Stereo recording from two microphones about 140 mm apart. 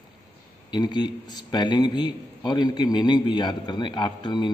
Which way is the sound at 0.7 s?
30° left (ahead or behind).